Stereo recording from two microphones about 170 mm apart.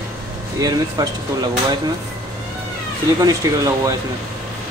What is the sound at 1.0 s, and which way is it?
Speech, 25° right (ahead or behind).